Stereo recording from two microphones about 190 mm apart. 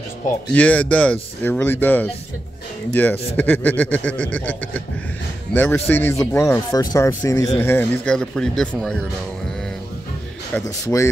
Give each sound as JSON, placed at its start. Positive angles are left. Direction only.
{"t": 0.5, "sound": "a man's voice", "side_deg": 5}
{"t": 10.5, "sound": "a man's voice", "side_deg": 10}